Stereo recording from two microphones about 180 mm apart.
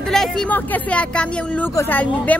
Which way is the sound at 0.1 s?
5° left (ahead or behind).